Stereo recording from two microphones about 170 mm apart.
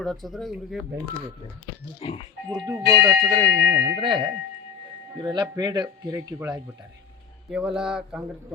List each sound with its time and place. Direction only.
0.0 s speech: centre (ahead or behind)
2.0 s speech: 35° left (ahead or behind)
2.6 s speech: 20° right (ahead or behind)
4.0 s speech: 25° right (ahead or behind)
7.5 s speech: 5° right (ahead or behind)